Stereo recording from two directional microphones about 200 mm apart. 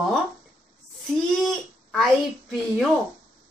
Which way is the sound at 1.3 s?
Centre (ahead or behind).